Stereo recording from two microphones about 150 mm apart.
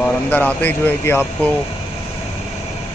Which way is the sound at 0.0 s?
10° left (ahead or behind).